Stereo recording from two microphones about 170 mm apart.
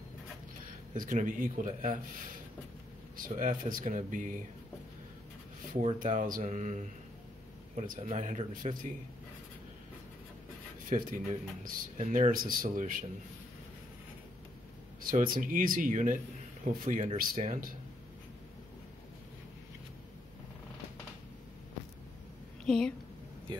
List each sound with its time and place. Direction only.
0.9 s speech: 50° right (ahead or behind)
3.2 s speech: 55° right (ahead or behind)
5.7 s speech: 50° right (ahead or behind)
10.9 s speech: 50° right (ahead or behind)
15.0 s speech: 55° right (ahead or behind)
22.7 s a woman's voice: 5° left (ahead or behind)